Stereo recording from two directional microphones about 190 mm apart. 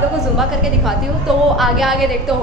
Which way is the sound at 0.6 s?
Centre (ahead or behind).